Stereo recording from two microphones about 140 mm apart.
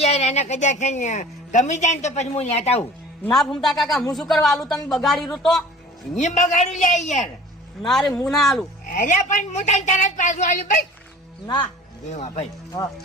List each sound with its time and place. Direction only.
0.0 s a woman's voice: 50° left (ahead or behind)
3.2 s a man's voice: 5° left (ahead or behind)
6.1 s a woman's voice: 60° left (ahead or behind)
7.9 s a man's voice: 5° left (ahead or behind)
8.9 s a woman's voice: 65° left (ahead or behind)
11.4 s speech: 30° left (ahead or behind)
12.1 s speech: 50° left (ahead or behind)